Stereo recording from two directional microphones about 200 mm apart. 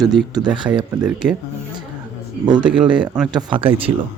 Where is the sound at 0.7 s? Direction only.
5° right (ahead or behind).